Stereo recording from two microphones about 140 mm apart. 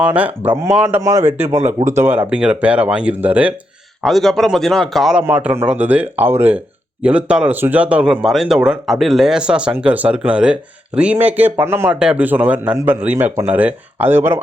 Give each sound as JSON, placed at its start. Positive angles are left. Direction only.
{"t": 0.0, "sound": "speech", "side_deg": -10}
{"t": 4.0, "sound": "a man's voice", "side_deg": 0}
{"t": 5.2, "sound": "speech", "side_deg": -10}